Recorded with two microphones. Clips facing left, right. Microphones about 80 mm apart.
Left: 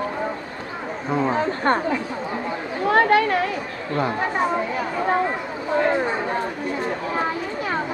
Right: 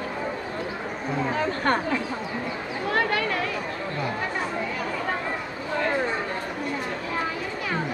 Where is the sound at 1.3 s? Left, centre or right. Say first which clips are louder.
Left 3 dB; left.